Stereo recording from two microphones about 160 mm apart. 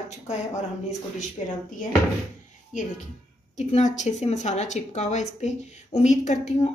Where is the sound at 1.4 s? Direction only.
40° left (ahead or behind).